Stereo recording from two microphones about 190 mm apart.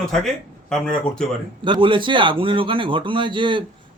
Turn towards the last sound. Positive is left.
turn(degrees=-25)  # may be behind; listen again after turning